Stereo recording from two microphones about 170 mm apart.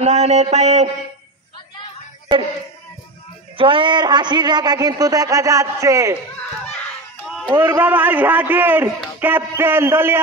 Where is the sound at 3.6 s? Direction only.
30° right (ahead or behind).